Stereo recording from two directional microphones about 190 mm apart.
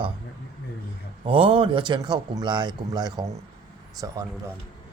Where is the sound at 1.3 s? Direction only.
25° right (ahead or behind).